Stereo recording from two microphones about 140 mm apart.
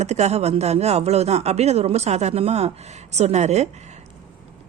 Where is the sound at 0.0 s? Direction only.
50° right (ahead or behind).